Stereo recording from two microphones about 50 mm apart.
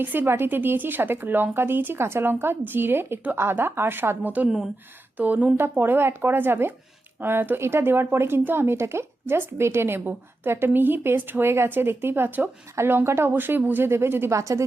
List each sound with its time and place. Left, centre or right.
0.0 s speech: right
4.2 s speech: right
4.4 s speech: centre
5.1 s speech: right
5.8 s speech: right
9.6 s speech: right
13.3 s speech: right
13.7 s speech: right
14.3 s a woman's voice: right